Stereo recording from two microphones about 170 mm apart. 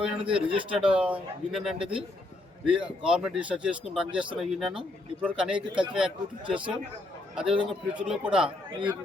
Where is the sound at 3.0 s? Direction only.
5° right (ahead or behind).